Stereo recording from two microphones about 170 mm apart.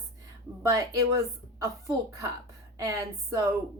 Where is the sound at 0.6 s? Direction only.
20° right (ahead or behind).